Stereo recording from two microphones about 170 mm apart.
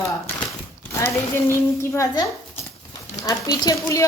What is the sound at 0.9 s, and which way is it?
Speech, 15° left (ahead or behind).